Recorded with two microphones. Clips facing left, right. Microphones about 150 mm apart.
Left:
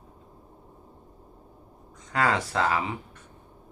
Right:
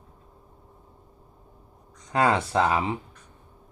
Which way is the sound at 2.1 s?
20° right (ahead or behind).